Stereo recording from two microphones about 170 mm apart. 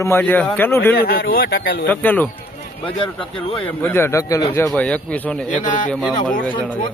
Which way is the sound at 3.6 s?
10° left (ahead or behind).